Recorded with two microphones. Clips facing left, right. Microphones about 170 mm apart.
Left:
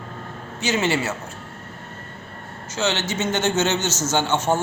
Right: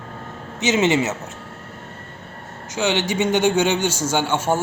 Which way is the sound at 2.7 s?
15° right (ahead or behind).